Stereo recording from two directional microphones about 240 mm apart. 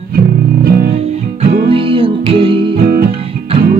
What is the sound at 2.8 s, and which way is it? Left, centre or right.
Music, right.